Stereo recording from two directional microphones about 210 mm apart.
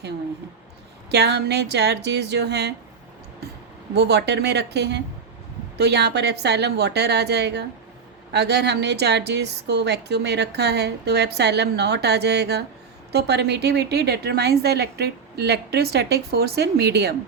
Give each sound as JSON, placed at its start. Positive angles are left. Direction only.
{"t": 1.1, "sound": "a woman's voice", "side_deg": -50}
{"t": 3.9, "sound": "a woman's voice", "side_deg": -55}